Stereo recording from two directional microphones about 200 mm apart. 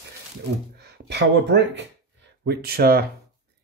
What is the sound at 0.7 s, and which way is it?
Speech, 55° right (ahead or behind).